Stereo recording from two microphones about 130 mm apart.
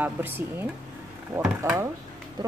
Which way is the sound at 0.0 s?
15° right (ahead or behind).